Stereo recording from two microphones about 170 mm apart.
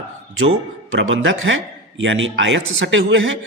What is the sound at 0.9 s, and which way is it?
Speech, 90° right.